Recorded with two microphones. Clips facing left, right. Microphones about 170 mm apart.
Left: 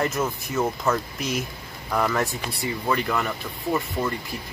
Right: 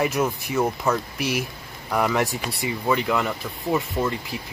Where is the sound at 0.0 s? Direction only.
10° right (ahead or behind).